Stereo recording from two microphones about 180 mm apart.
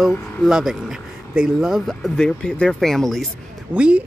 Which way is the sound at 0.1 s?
Centre (ahead or behind).